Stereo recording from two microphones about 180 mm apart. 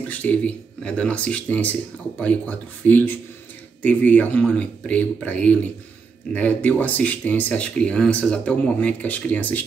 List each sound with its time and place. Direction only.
0.1 s speech: 10° left (ahead or behind)